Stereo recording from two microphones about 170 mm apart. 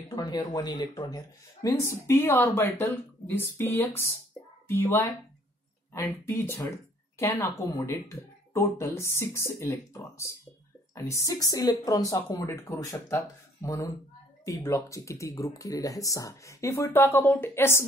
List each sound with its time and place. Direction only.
0.1 s speech: 25° left (ahead or behind)
6.2 s speech: 15° left (ahead or behind)